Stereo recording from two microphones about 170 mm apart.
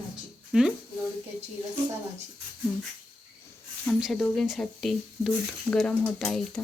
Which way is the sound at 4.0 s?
Centre (ahead or behind).